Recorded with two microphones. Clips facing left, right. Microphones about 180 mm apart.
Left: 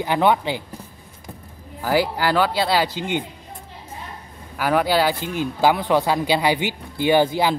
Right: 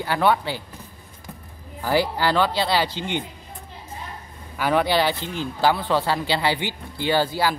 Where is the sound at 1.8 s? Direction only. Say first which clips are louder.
Left 1 dB; 10° left (ahead or behind).